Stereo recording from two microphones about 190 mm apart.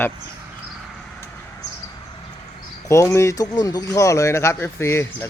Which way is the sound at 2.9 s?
15° left (ahead or behind).